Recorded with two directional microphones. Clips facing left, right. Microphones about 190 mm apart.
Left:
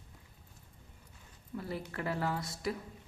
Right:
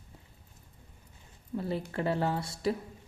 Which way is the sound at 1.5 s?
25° right (ahead or behind).